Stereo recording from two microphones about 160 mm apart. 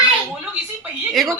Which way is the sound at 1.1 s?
Centre (ahead or behind).